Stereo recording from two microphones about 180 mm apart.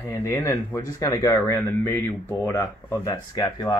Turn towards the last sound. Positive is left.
turn(degrees=25)  # may be behind; listen again after turning